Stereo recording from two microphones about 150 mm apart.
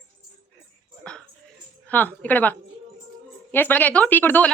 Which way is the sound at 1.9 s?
10° left (ahead or behind).